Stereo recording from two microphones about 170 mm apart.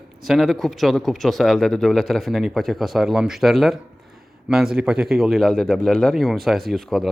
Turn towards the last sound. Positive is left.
turn(degrees=0)  # may be behind; listen again after turning